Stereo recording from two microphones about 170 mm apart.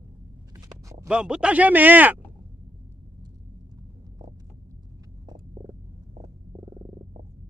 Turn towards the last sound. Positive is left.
turn(degrees=-25)  # may be behind; listen again after turning